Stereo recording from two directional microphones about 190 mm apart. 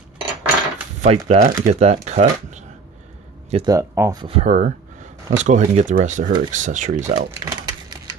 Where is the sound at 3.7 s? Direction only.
15° right (ahead or behind).